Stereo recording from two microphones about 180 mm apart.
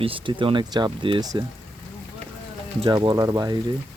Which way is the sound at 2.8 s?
25° right (ahead or behind).